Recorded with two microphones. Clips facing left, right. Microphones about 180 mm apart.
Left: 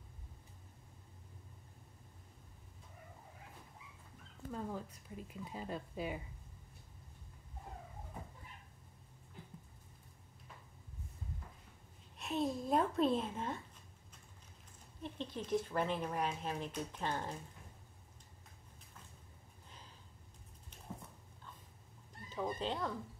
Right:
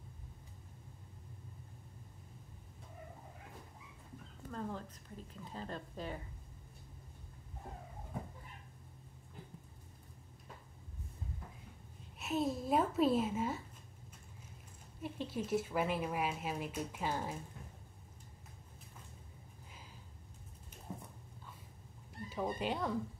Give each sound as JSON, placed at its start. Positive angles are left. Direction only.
{"t": 4.5, "sound": "speech", "side_deg": 10}
{"t": 12.2, "sound": "a woman's voice", "side_deg": -5}
{"t": 15.0, "sound": "speech", "side_deg": -10}
{"t": 20.9, "sound": "dog", "side_deg": -15}
{"t": 22.3, "sound": "speech", "side_deg": -10}